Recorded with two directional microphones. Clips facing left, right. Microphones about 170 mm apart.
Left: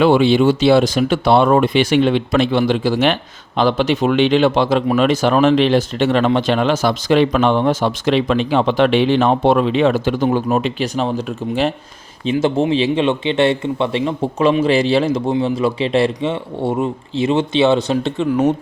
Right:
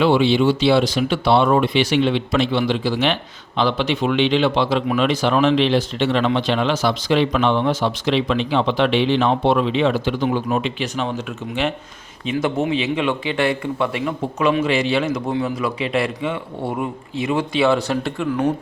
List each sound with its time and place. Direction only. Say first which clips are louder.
0.0 s a man's voice: left 3 dB; 50° left (ahead or behind); by 18.5 s 20° left (ahead or behind)